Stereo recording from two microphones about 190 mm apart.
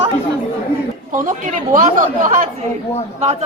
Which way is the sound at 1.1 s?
45° right (ahead or behind).